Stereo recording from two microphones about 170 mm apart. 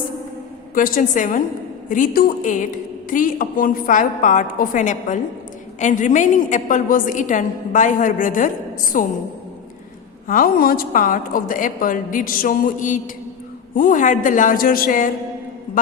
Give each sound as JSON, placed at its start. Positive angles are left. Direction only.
{"t": 0.7, "sound": "a woman's voice", "side_deg": 55}
{"t": 10.2, "sound": "a woman's voice", "side_deg": 55}